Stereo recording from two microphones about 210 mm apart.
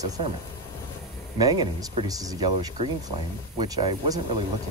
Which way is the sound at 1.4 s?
20° right (ahead or behind).